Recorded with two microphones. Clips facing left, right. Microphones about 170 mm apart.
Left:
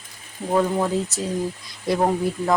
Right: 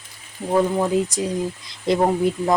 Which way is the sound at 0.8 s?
15° right (ahead or behind).